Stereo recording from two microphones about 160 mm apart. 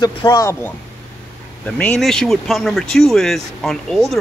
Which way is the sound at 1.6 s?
5° left (ahead or behind).